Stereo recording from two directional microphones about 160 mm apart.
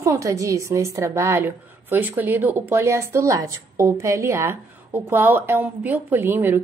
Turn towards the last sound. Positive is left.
turn(degrees=-15)  # may be behind; listen again after turning